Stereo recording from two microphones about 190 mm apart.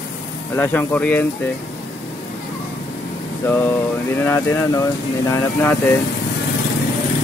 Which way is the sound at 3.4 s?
10° left (ahead or behind).